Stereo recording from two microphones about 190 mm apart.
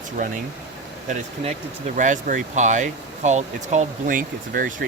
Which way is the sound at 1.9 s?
40° right (ahead or behind).